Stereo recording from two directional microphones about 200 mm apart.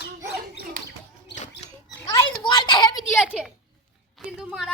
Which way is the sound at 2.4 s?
20° left (ahead or behind).